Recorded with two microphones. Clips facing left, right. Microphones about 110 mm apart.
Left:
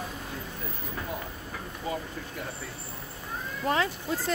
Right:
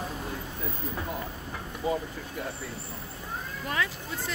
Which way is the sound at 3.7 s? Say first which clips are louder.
Left 4 dB; 35° left (ahead or behind).